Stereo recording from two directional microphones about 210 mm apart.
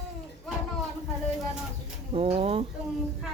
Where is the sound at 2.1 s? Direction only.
30° right (ahead or behind).